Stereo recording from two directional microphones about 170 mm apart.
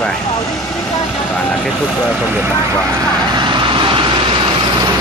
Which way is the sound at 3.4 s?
25° right (ahead or behind).